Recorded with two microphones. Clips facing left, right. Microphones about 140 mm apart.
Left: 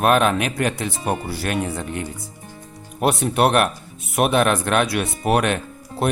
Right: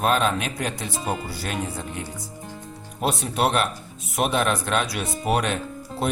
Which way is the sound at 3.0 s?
60° left (ahead or behind).